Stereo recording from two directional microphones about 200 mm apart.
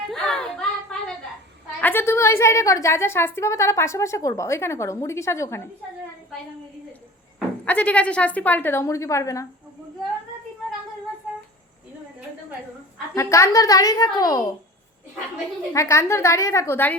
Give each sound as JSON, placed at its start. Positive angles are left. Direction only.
{"t": 0.1, "sound": "a sound", "side_deg": 5}
{"t": 1.8, "sound": "a woman's voice", "side_deg": 10}
{"t": 7.3, "sound": "a woman's voice", "side_deg": 5}
{"t": 13.1, "sound": "a woman's voice", "side_deg": 15}
{"t": 15.7, "sound": "a woman's voice", "side_deg": 15}